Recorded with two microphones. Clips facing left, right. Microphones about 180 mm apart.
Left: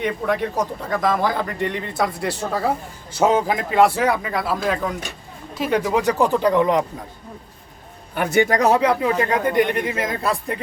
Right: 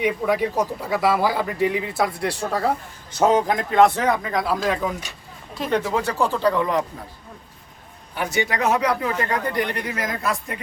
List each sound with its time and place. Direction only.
0.0 s speech: 5° right (ahead or behind); by 6.8 s 20° left (ahead or behind)
8.1 s a man's voice: 55° left (ahead or behind); by 10.6 s 30° left (ahead or behind)